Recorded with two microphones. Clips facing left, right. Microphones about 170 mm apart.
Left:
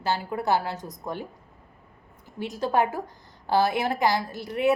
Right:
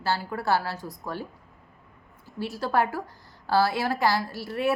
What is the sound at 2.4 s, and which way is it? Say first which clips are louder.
A woman's voice: left 1 dB; 20° left (ahead or behind).